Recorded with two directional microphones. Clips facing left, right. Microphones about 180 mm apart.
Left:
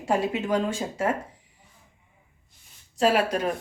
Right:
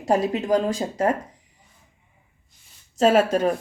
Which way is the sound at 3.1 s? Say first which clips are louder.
Right 5 dB; 45° right (ahead or behind).